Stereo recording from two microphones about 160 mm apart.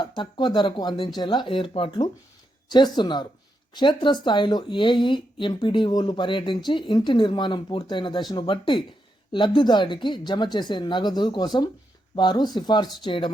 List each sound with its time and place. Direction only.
0.2 s a woman's voice: 30° left (ahead or behind)